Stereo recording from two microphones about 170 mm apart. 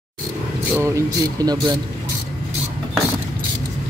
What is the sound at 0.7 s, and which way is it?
Speech, 15° right (ahead or behind).